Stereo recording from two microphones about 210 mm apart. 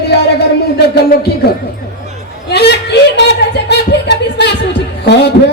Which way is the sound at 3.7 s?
55° left (ahead or behind).